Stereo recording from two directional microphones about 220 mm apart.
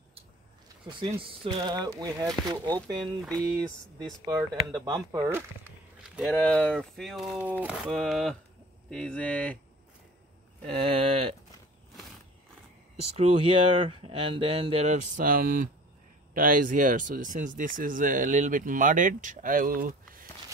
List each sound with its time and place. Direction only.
0.8 s speech: 25° right (ahead or behind)
4.8 s speech: 15° right (ahead or behind)
6.0 s a sound: centre (ahead or behind)
6.3 s speech: 5° left (ahead or behind)
10.7 s speech: 25° right (ahead or behind)
13.1 s speech: 25° right (ahead or behind)